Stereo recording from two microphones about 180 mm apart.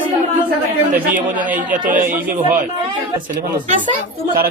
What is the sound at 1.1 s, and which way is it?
A man's voice, 45° right (ahead or behind).